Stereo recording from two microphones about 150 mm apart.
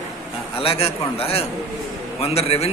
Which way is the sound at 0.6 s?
40° left (ahead or behind).